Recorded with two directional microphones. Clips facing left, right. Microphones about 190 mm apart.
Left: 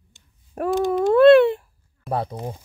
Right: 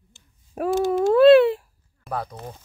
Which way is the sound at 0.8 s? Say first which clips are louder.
Left 1 dB; 5° right (ahead or behind).